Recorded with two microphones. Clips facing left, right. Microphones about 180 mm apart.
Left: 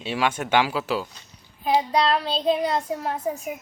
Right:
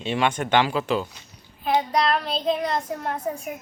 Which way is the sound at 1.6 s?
10° left (ahead or behind).